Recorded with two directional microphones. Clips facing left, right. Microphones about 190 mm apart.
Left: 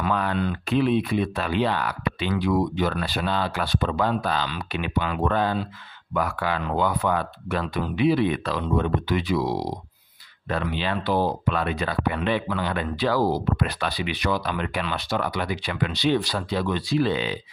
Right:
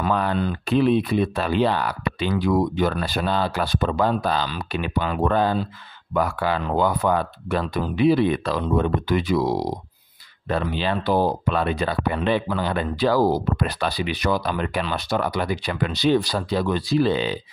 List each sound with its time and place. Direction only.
0.0 s speech: 35° right (ahead or behind)